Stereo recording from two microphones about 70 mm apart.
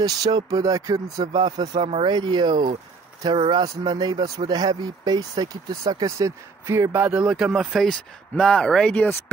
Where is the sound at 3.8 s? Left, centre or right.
Right.